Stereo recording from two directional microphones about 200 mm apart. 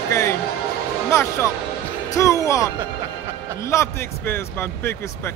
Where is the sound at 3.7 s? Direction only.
10° left (ahead or behind).